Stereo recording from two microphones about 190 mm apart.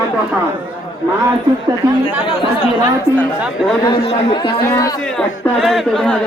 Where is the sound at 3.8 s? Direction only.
25° left (ahead or behind).